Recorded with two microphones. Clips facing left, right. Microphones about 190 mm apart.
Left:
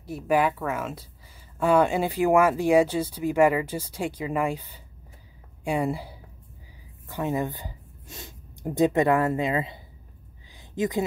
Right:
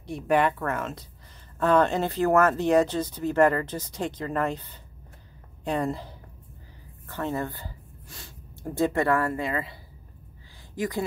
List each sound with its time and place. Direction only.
0.0 s speech: 5° left (ahead or behind); by 9.8 s 20° left (ahead or behind)